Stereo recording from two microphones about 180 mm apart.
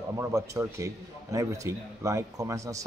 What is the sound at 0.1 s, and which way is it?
A man's voice, 15° right (ahead or behind).